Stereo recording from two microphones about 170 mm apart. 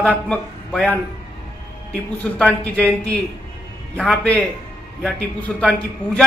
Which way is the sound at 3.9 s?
5° left (ahead or behind).